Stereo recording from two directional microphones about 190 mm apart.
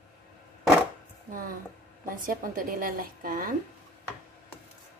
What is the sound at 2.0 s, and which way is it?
A woman's voice, 45° right (ahead or behind).